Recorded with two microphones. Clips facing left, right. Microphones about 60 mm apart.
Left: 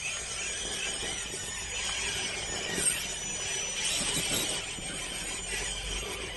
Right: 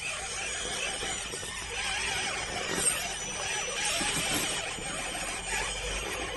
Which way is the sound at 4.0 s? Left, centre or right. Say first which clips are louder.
Right 1 dB; right.